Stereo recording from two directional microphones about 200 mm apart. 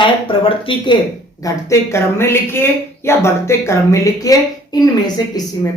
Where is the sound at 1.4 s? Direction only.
15° left (ahead or behind).